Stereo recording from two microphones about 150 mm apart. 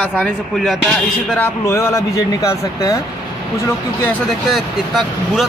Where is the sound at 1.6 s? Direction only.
20° left (ahead or behind).